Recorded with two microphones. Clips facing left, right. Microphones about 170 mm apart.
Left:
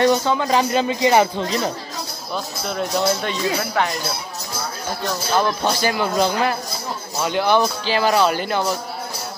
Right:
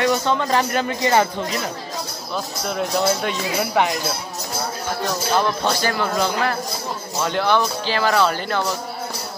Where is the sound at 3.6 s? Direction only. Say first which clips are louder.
Right 2 dB; 15° right (ahead or behind).